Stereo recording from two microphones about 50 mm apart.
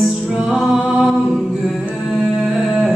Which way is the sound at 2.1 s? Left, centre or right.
Centre.